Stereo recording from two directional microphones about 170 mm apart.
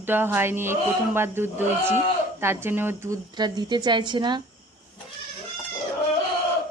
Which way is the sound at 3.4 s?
25° right (ahead or behind).